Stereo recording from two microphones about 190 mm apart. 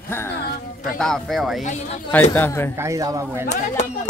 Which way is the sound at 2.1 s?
10° left (ahead or behind).